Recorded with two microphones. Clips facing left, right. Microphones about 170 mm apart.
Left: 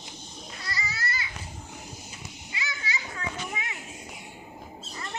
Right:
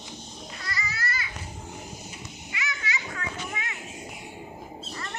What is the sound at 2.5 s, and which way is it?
Children playing, 30° left (ahead or behind).